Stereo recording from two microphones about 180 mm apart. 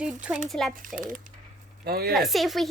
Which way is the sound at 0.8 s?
50° right (ahead or behind).